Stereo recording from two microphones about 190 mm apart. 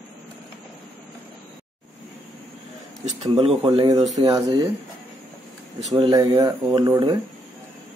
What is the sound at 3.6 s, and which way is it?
Speech, 20° right (ahead or behind).